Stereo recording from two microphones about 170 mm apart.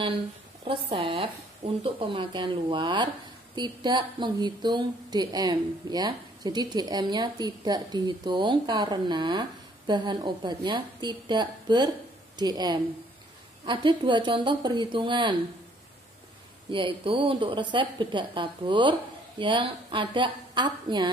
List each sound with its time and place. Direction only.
0.7 s speech: 30° right (ahead or behind)
16.7 s speech: 30° right (ahead or behind)